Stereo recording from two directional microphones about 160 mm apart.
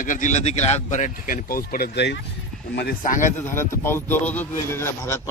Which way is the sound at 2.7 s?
80° left.